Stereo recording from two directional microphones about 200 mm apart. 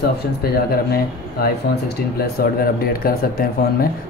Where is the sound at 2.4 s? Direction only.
50° left (ahead or behind).